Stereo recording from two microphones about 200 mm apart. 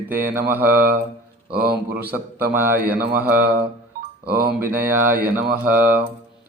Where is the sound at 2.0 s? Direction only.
10° right (ahead or behind).